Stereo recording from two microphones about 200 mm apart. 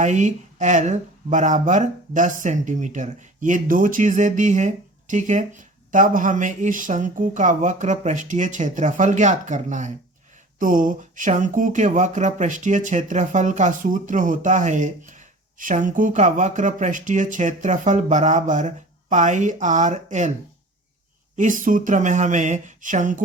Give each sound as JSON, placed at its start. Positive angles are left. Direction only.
{"t": 0.0, "sound": "speech", "side_deg": -35}
{"t": 21.3, "sound": "speech", "side_deg": -40}